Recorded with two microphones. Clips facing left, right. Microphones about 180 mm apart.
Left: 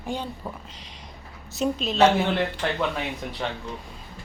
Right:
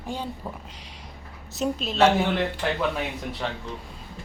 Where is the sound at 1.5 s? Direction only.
5° right (ahead or behind).